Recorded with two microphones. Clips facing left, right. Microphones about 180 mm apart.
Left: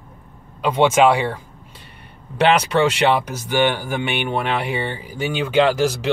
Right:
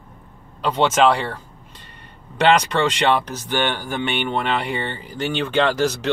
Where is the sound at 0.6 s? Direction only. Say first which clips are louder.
Left 2 dB; 10° left (ahead or behind).